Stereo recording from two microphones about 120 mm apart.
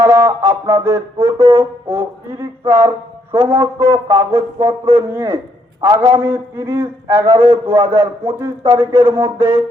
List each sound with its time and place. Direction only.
0.0 s music: 20° right (ahead or behind)
0.7 s a man's voice: 20° right (ahead or behind)